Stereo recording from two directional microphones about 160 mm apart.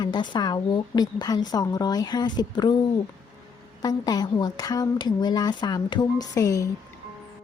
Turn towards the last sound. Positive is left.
turn(degrees=20)  # may be behind; listen again after turning